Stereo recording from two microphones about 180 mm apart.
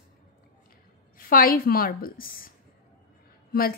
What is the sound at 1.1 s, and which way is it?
A woman's voice, 50° left (ahead or behind).